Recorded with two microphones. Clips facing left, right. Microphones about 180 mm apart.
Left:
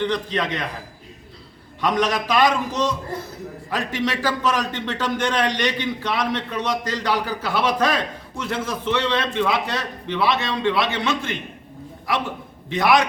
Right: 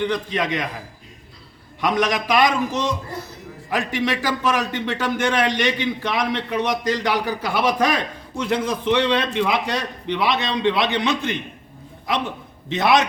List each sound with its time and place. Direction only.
0.0 s a man's voice: 10° right (ahead or behind)
1.8 s a man's voice: 10° right (ahead or behind)
3.7 s a man's voice: 10° right (ahead or behind)